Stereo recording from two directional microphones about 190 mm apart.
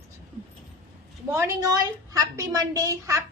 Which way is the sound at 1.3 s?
15° right (ahead or behind).